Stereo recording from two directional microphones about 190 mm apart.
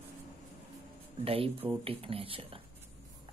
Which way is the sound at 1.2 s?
30° right (ahead or behind).